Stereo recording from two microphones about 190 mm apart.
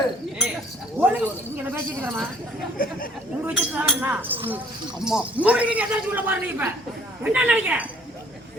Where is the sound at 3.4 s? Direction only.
10° right (ahead or behind).